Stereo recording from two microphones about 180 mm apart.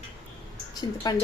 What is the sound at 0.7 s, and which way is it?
Speech, 20° left (ahead or behind).